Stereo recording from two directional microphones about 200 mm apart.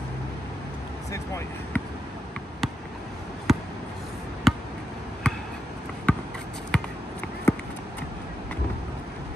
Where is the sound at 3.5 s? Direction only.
Centre (ahead or behind).